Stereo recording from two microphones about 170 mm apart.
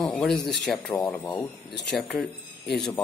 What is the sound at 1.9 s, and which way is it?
Speech, 5° left (ahead or behind).